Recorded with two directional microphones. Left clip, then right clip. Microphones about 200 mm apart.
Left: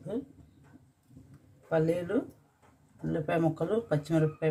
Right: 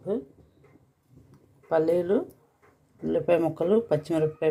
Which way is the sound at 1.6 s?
20° right (ahead or behind).